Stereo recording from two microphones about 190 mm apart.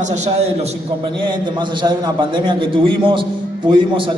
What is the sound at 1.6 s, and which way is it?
A man's voice, 25° right (ahead or behind).